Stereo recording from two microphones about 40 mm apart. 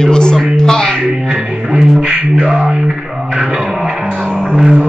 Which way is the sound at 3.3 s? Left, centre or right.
Right.